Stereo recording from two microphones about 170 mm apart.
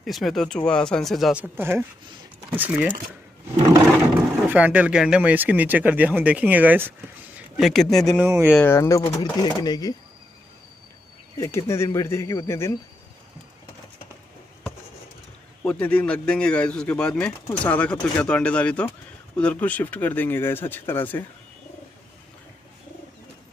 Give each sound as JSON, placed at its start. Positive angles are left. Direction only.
{"t": 0.0, "sound": "speech", "side_deg": 0}
{"t": 4.5, "sound": "speech", "side_deg": -10}
{"t": 8.3, "sound": "speech", "side_deg": -15}
{"t": 8.5, "sound": "speech", "side_deg": 15}
{"t": 11.3, "sound": "speech", "side_deg": 15}
{"t": 15.6, "sound": "speech", "side_deg": 10}